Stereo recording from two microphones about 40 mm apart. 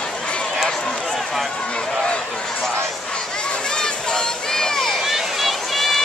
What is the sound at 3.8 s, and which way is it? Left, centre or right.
Crowd, centre.